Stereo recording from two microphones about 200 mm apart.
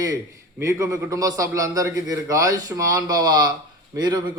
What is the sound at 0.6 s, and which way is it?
A man's voice, 15° right (ahead or behind).